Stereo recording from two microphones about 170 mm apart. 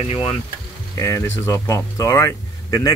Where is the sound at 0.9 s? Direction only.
15° left (ahead or behind).